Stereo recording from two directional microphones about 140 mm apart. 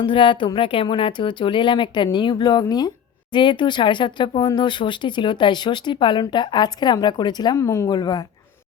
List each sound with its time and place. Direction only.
0.0 s speech: 35° left (ahead or behind)